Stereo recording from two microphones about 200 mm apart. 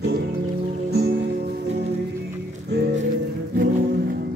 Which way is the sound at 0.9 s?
50° right (ahead or behind).